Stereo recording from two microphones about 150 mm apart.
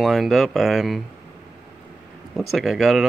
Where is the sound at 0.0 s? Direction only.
Centre (ahead or behind).